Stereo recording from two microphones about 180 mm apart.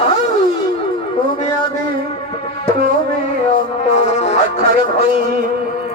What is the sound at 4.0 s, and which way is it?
Music, 35° left (ahead or behind).